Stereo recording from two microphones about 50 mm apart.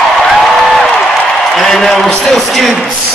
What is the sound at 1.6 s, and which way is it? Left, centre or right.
A man's voice, centre.